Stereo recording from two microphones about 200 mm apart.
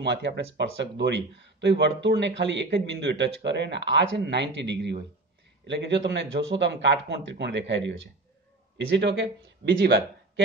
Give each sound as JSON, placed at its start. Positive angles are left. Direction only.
{"t": 0.0, "sound": "a man's voice", "side_deg": -60}